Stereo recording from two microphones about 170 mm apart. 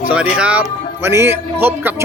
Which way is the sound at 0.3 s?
10° right (ahead or behind).